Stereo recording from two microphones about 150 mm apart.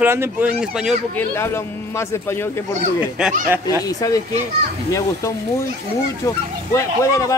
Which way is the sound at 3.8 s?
25° left (ahead or behind).